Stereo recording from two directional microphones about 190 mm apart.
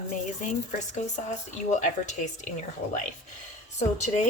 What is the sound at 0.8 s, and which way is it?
A woman's voice, 40° left (ahead or behind).